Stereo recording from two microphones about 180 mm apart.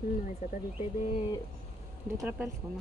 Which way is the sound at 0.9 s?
35° left (ahead or behind).